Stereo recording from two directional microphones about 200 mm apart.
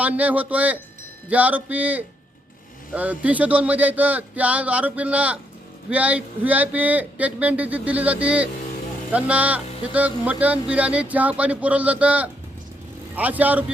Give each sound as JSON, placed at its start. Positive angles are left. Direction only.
{"t": 0.0, "sound": "speech", "side_deg": -5}